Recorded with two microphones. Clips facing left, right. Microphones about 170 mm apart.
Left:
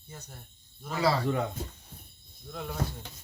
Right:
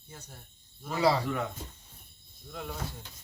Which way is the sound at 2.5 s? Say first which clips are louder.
Left 2 dB; centre (ahead or behind).